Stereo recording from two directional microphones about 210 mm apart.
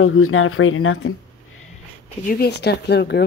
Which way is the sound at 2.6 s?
50° left (ahead or behind).